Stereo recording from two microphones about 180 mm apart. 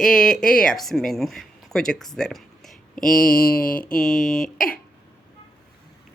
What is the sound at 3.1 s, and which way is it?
Mantra, 50° left (ahead or behind).